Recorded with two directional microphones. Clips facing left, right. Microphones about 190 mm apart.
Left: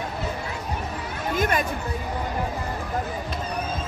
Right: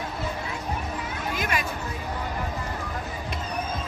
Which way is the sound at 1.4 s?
50° left (ahead or behind).